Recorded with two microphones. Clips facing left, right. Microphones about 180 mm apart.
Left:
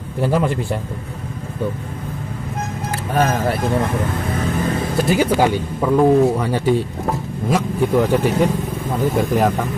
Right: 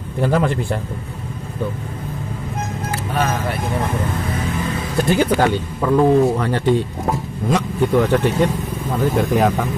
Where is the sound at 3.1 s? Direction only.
45° left (ahead or behind).